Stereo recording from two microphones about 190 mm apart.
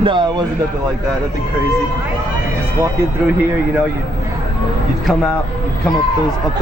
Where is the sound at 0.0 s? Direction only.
25° right (ahead or behind).